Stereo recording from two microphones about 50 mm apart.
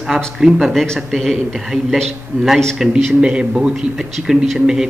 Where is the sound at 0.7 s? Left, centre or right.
Centre.